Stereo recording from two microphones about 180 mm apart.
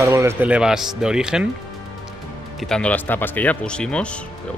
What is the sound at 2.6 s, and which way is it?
Speech, 5° left (ahead or behind).